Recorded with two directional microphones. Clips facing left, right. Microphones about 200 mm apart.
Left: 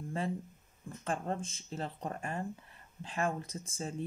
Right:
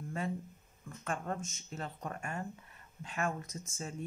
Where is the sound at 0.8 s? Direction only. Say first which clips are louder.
Left 2 dB; 30° left (ahead or behind).